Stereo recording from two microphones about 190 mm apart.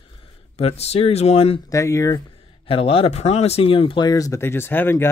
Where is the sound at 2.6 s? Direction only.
30° left (ahead or behind).